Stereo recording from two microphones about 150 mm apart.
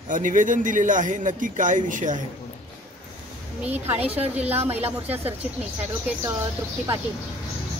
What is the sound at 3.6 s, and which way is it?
A woman's voice, 10° right (ahead or behind).